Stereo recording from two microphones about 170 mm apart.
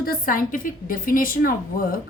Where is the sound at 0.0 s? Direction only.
60° left (ahead or behind).